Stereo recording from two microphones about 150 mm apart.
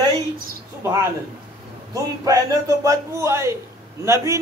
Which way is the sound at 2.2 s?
20° right (ahead or behind).